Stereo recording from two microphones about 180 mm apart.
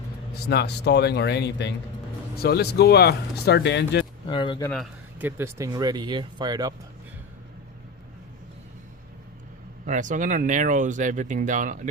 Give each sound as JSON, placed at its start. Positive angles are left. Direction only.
{"t": 0.4, "sound": "speech", "side_deg": 65}
{"t": 2.3, "sound": "speech", "side_deg": 60}
{"t": 4.3, "sound": "speech", "side_deg": 30}
{"t": 5.2, "sound": "speech", "side_deg": -15}
{"t": 9.8, "sound": "speech", "side_deg": -45}